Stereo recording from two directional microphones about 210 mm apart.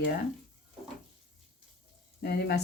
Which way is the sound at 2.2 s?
50° left (ahead or behind).